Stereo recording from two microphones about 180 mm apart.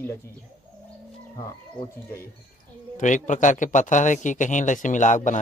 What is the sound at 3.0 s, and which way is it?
Speech, 45° left (ahead or behind).